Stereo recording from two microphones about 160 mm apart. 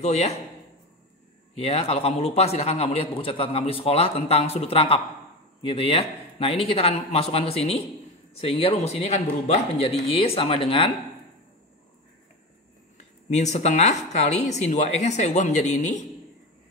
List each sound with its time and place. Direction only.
0.0 s a man's voice: 40° left (ahead or behind)
1.6 s a man's voice: 40° left (ahead or behind)
13.3 s speech: 45° left (ahead or behind)